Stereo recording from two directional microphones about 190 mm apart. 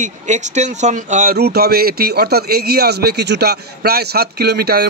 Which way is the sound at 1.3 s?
55° right (ahead or behind).